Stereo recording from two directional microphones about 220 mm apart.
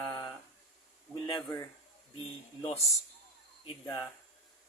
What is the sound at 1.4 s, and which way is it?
Speech, 10° left (ahead or behind).